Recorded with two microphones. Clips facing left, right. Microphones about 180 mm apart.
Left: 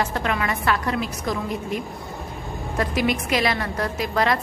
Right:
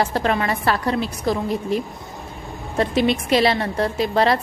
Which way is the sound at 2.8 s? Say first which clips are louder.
Right 4 dB; 30° right (ahead or behind).